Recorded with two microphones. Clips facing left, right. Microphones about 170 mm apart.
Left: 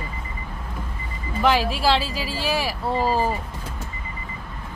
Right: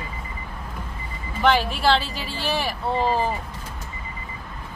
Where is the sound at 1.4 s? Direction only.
Centre (ahead or behind).